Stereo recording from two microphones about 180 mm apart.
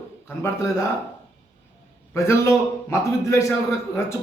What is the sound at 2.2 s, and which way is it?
A man's voice, 15° left (ahead or behind).